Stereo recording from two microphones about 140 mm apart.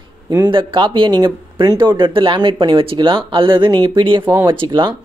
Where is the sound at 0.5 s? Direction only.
40° right (ahead or behind).